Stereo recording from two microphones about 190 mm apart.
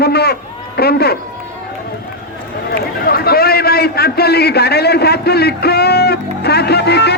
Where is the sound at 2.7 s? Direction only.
55° left (ahead or behind).